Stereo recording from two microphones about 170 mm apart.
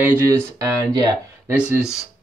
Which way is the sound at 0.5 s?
20° right (ahead or behind).